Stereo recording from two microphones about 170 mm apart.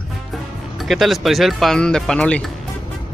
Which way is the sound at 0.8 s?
Centre (ahead or behind).